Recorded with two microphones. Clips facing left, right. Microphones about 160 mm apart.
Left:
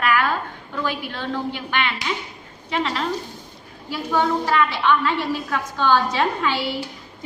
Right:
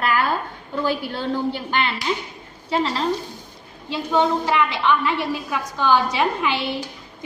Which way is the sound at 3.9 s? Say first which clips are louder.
Right 1 dB; 20° right (ahead or behind).